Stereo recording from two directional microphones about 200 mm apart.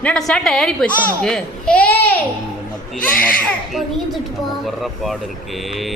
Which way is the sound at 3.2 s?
5° left (ahead or behind).